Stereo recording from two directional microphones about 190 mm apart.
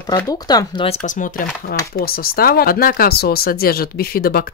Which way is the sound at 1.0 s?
45° left (ahead or behind).